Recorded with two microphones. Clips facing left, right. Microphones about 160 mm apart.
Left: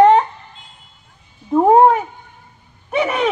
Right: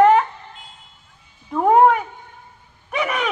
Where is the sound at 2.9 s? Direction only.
30° left (ahead or behind).